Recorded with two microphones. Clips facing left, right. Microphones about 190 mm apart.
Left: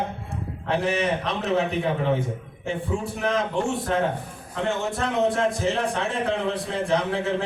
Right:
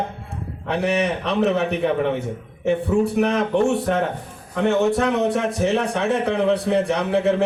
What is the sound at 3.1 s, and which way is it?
A man's voice, 65° right (ahead or behind).